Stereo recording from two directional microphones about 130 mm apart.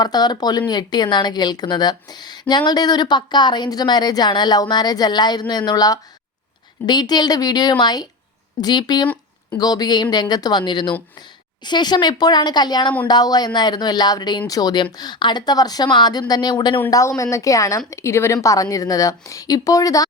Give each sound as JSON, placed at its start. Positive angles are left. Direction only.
{"t": 0.0, "sound": "a woman's voice", "side_deg": 30}
{"t": 16.9, "sound": "a woman's voice", "side_deg": 25}